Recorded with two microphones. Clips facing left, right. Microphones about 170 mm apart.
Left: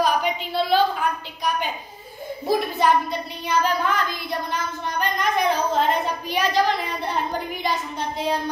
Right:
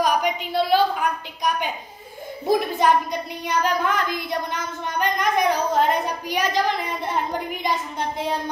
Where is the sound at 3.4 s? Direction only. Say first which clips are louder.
Even; 15° right (ahead or behind).